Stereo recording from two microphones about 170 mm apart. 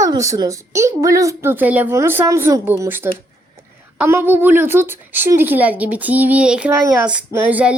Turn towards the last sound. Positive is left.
turn(degrees=-10)  # may be behind; listen again after turning